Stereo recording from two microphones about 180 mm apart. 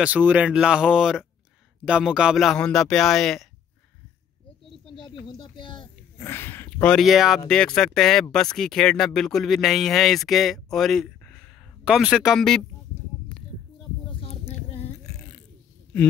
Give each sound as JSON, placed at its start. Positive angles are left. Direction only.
{"t": 0.0, "sound": "speech", "side_deg": -10}
{"t": 4.9, "sound": "speech", "side_deg": 25}
{"t": 6.1, "sound": "speech", "side_deg": 15}